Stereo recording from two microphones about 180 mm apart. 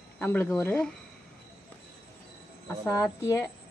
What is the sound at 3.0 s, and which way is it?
Speech, 15° left (ahead or behind).